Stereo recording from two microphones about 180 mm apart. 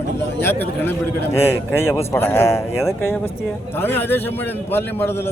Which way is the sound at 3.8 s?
10° left (ahead or behind).